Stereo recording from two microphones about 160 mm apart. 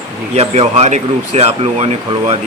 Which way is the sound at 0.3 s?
40° right (ahead or behind).